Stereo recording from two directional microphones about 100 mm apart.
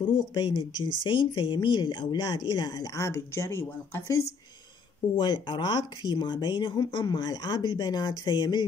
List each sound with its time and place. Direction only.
0.0 s speech: 55° left (ahead or behind); by 4.3 s 25° left (ahead or behind)
5.1 s speech: 50° left (ahead or behind)